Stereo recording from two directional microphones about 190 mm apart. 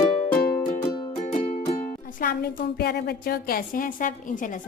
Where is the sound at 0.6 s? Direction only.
25° left (ahead or behind).